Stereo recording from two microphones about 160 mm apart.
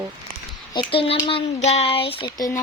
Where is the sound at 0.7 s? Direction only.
30° left (ahead or behind).